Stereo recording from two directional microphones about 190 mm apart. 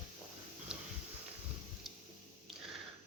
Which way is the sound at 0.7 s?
5° right (ahead or behind).